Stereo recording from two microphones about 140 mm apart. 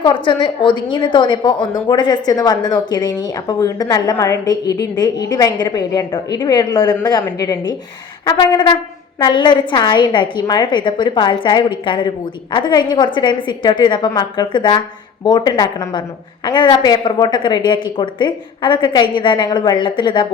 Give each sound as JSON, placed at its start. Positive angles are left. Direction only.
{"t": 0.0, "sound": "a woman's voice", "side_deg": 35}